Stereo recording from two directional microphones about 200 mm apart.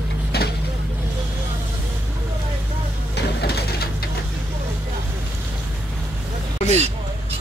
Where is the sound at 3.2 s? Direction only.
55° left (ahead or behind).